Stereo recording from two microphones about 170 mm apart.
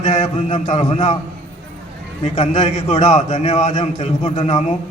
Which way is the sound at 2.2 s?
40° left (ahead or behind).